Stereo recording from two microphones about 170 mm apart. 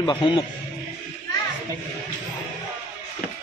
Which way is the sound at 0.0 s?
30° left (ahead or behind).